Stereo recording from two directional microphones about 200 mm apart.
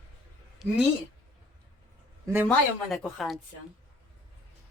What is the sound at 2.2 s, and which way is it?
Speech, 10° right (ahead or behind).